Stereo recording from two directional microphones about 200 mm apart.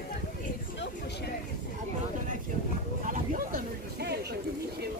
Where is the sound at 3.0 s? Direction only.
40° right (ahead or behind).